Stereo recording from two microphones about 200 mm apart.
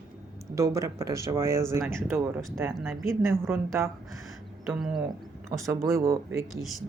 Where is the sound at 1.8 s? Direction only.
5° left (ahead or behind).